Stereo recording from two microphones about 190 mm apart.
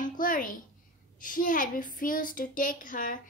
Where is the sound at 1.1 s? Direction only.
45° left (ahead or behind).